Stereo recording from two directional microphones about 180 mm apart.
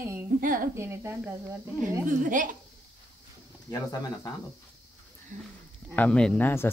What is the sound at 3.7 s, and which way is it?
Speech, 20° left (ahead or behind).